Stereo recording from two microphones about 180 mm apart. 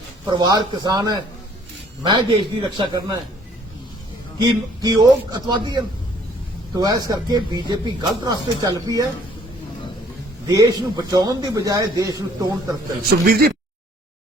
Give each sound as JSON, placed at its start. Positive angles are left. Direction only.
{"t": 0.3, "sound": "speech", "side_deg": -25}
{"t": 4.4, "sound": "speech", "side_deg": -25}
{"t": 10.4, "sound": "speech", "side_deg": -20}
{"t": 13.0, "sound": "a man's voice", "side_deg": -55}